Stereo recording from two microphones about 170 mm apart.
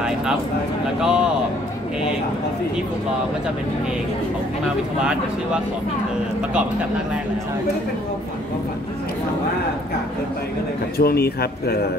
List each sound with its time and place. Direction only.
1.0 s a man's voice: 5° right (ahead or behind)
11.0 s speech: 65° left (ahead or behind)